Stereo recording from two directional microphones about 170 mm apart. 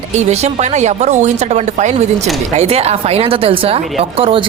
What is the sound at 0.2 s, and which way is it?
Speech, 40° right (ahead or behind).